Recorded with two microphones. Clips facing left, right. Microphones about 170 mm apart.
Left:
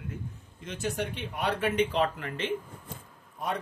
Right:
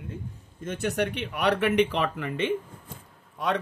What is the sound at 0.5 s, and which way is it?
Speech, 55° right (ahead or behind).